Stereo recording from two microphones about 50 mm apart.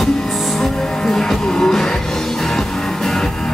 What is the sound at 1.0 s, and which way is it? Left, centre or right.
Music, centre.